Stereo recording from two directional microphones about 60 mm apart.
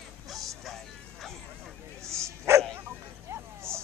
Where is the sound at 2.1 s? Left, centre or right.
Right.